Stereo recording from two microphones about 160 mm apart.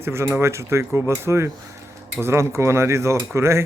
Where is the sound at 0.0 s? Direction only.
15° right (ahead or behind).